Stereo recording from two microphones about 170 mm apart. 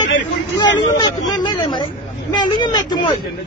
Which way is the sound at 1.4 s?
25° left (ahead or behind).